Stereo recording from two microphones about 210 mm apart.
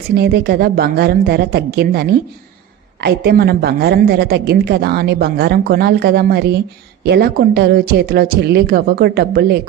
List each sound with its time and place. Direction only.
0.2 s a woman's voice: 50° right (ahead or behind)